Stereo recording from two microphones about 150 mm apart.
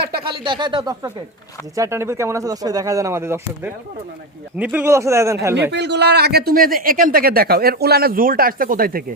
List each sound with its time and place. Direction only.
0.2 s speech: 35° right (ahead or behind)
6.0 s speech: 90° right